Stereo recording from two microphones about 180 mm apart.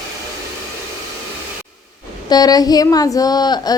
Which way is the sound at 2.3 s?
20° left (ahead or behind).